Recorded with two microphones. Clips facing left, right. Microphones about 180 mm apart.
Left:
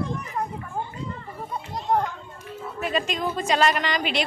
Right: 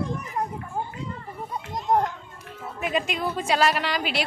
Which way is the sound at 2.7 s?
10° right (ahead or behind).